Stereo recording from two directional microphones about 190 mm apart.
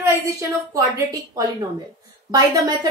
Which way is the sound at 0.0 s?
15° right (ahead or behind).